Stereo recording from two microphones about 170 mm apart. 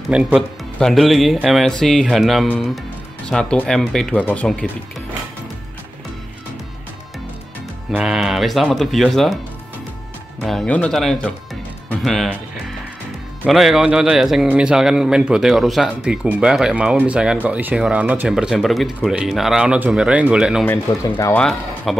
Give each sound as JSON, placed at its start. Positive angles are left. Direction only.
{"t": 0.1, "sound": "a man's voice", "side_deg": -5}
{"t": 7.9, "sound": "a man's voice", "side_deg": -5}
{"t": 10.4, "sound": "a man's voice", "side_deg": 0}
{"t": 20.6, "sound": "speech", "side_deg": 15}
{"t": 21.4, "sound": "speech", "side_deg": 0}